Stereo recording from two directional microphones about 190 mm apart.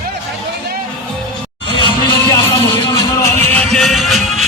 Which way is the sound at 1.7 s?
25° left (ahead or behind).